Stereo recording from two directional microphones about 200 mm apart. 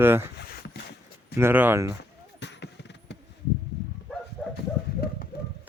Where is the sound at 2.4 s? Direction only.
60° left (ahead or behind).